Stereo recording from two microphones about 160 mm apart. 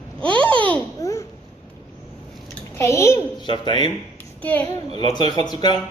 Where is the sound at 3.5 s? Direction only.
30° left (ahead or behind).